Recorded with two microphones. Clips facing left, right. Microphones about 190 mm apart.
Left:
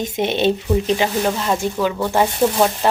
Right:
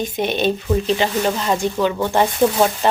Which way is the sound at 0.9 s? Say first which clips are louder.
Even; 10° left (ahead or behind).